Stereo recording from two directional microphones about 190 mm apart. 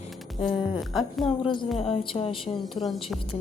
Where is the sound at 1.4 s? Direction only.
25° left (ahead or behind).